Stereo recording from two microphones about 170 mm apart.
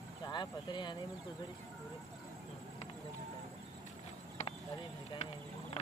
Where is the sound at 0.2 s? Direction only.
25° left (ahead or behind).